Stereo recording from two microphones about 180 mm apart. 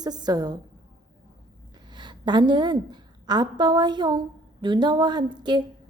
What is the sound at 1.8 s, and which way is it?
A woman's voice, 25° right (ahead or behind).